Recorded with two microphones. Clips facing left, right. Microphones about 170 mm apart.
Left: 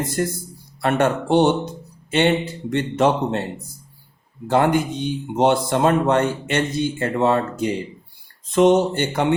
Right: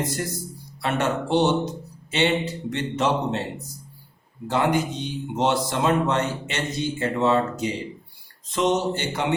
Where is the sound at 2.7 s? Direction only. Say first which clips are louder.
Left 6 dB; 55° left (ahead or behind).